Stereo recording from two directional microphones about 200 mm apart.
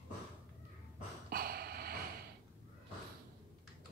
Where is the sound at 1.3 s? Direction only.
50° right (ahead or behind).